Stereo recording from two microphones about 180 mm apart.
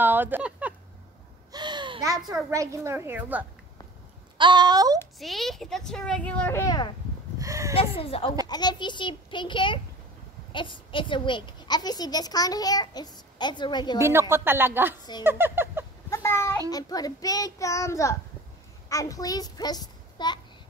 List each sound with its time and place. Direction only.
0.0 s a sound: 10° right (ahead or behind)
1.5 s babbling: 25° right (ahead or behind)
2.5 s a woman's voice: 15° right (ahead or behind)
4.4 s speech: 25° right (ahead or behind)
5.2 s speech: centre (ahead or behind); by 6.9 s 20° left (ahead or behind)
7.3 s a sound: 15° right (ahead or behind)
7.7 s a child's voice: 30° left (ahead or behind)
13.9 s a woman's voice: 15° right (ahead or behind)
16.1 s a sound: 15° left (ahead or behind)
16.7 s a child's voice: 20° left (ahead or behind)